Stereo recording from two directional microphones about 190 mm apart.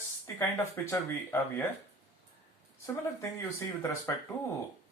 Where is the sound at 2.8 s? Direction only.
15° left (ahead or behind).